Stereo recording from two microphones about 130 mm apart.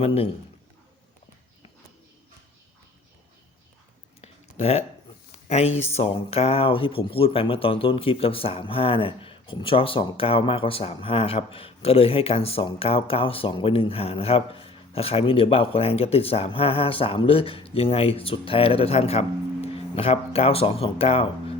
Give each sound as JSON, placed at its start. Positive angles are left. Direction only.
{"t": 0.0, "sound": "speech", "side_deg": 50}
{"t": 4.2, "sound": "a sound", "side_deg": 50}
{"t": 5.3, "sound": "speech", "side_deg": 60}